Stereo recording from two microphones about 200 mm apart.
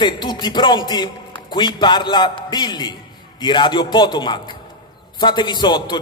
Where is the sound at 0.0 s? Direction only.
20° left (ahead or behind).